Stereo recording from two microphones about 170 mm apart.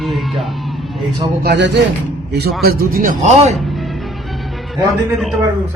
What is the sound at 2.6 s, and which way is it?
Speech, 60° right (ahead or behind).